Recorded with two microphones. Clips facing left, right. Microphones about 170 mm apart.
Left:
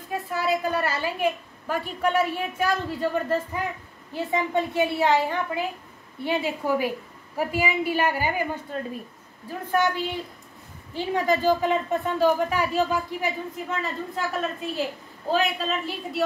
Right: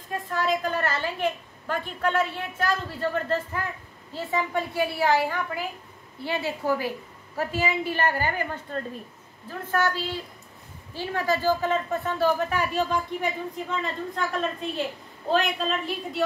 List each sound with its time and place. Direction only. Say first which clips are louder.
0.1 s a woman's voice: left 1 dB; 10° left (ahead or behind)